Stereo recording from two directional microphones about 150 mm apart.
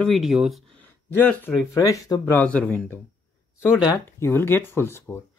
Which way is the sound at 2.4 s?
10° left (ahead or behind).